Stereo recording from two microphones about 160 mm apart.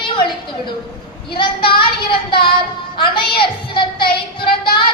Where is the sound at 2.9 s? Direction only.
30° left (ahead or behind).